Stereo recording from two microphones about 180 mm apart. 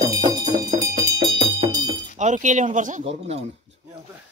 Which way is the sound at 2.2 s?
40° right (ahead or behind).